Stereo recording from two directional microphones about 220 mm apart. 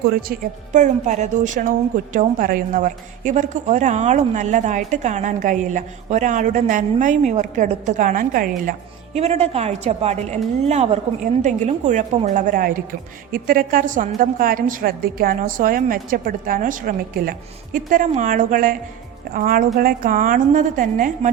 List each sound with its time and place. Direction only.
0.1 s a woman's voice: 40° right (ahead or behind)
9.1 s a woman's voice: 30° right (ahead or behind)